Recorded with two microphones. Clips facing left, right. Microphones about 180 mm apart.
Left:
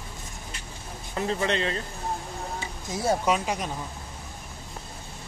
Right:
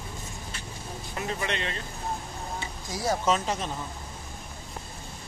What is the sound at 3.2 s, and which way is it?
Speech, 10° left (ahead or behind).